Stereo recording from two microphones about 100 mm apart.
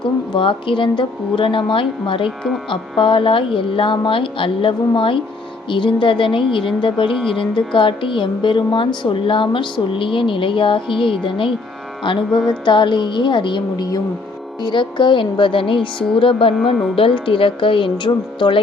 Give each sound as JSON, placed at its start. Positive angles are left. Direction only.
{"t": 0.3, "sound": "speech", "side_deg": 60}
{"t": 12.3, "sound": "music", "side_deg": 5}
{"t": 12.6, "sound": "speech", "side_deg": 55}